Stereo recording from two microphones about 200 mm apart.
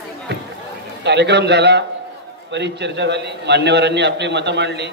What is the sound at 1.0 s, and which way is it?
A man's voice, 60° right (ahead or behind).